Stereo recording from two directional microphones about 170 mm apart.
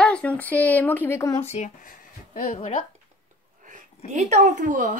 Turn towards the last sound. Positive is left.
turn(degrees=-50)  # may be behind; listen again after turning